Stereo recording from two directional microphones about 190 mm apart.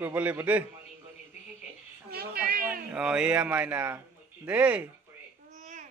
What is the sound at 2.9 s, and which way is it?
A man's voice, 5° right (ahead or behind).